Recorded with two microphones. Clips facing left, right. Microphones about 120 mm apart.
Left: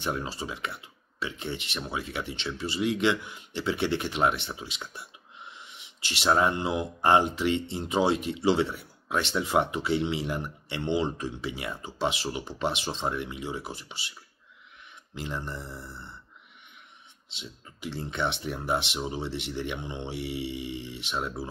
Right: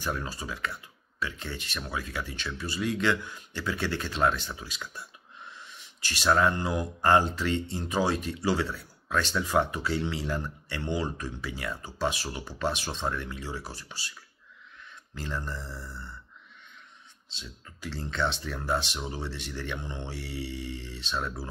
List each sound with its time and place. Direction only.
0.0 s speech: 20° left (ahead or behind)
17.4 s speech: 20° left (ahead or behind)